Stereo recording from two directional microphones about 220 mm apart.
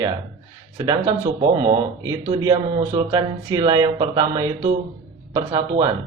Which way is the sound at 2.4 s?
20° right (ahead or behind).